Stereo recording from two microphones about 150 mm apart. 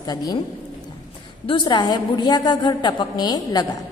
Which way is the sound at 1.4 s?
30° left (ahead or behind).